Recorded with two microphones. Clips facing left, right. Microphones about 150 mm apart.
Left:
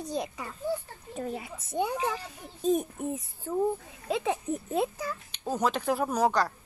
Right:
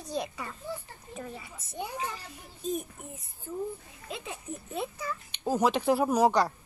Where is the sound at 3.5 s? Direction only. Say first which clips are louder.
Left 7 dB; 90° left.